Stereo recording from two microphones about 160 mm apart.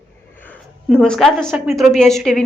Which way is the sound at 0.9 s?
5° left (ahead or behind).